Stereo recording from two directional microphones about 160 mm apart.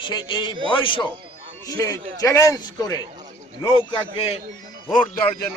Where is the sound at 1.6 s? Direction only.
20° left (ahead or behind).